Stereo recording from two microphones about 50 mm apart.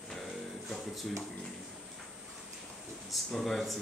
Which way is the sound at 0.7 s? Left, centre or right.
Centre.